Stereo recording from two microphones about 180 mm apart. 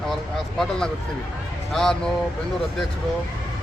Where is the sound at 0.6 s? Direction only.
5° left (ahead or behind).